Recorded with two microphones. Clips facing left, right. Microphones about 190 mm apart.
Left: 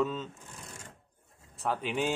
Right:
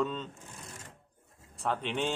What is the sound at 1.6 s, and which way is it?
Speech, 5° left (ahead or behind).